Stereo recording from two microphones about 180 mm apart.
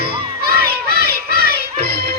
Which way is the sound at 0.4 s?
60° right (ahead or behind).